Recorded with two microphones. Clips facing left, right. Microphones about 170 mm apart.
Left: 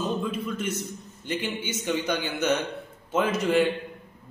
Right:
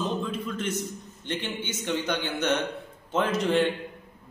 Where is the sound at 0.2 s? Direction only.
10° left (ahead or behind).